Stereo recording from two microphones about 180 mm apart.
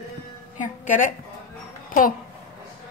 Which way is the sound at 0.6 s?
45° left (ahead or behind).